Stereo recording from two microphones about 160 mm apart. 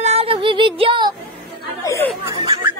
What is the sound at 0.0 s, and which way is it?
Music, 40° right (ahead or behind).